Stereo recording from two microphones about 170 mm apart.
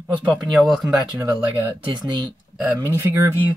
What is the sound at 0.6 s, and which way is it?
Speech, centre (ahead or behind).